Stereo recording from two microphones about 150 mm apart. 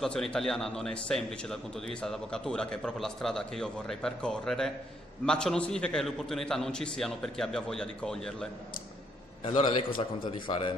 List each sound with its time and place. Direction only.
0.0 s a man's voice: 5° left (ahead or behind)
9.4 s a man's voice: 40° left (ahead or behind)